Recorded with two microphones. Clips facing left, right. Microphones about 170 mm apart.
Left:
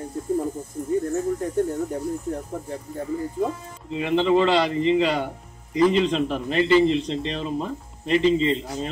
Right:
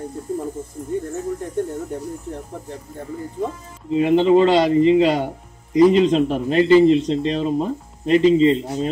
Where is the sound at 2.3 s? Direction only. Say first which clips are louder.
Left 2 dB; 5° left (ahead or behind).